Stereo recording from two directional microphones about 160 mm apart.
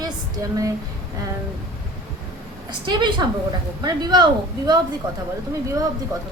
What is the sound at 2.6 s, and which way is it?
A woman's voice, 30° right (ahead or behind).